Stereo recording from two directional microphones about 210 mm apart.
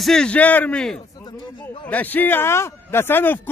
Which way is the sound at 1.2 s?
20° left (ahead or behind).